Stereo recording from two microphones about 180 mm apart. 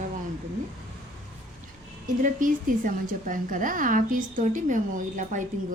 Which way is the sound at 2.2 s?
50° right (ahead or behind).